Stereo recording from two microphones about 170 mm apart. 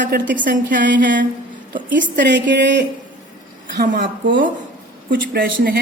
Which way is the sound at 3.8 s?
80° right.